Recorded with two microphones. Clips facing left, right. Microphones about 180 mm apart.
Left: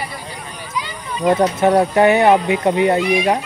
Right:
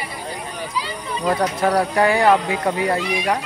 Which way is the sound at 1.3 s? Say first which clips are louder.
Left 5 dB; 25° left (ahead or behind).